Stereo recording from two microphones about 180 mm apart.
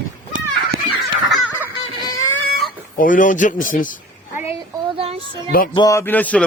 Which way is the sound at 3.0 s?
45° left (ahead or behind).